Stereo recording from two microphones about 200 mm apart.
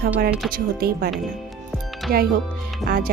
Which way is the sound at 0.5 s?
50° right (ahead or behind).